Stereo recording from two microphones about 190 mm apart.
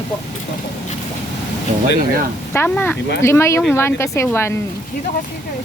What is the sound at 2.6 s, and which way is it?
Speech, 10° left (ahead or behind).